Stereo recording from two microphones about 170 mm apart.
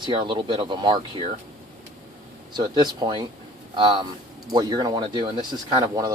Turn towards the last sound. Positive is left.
turn(degrees=-25)  # may be behind; listen again after turning